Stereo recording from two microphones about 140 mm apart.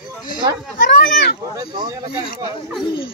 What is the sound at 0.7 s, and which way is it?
Speech, 85° left.